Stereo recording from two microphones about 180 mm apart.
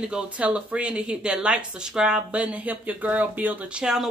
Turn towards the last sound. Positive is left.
turn(degrees=-5)  # may be behind; listen again after turning